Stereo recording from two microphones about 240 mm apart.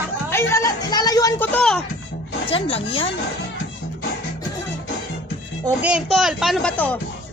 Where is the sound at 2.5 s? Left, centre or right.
Left.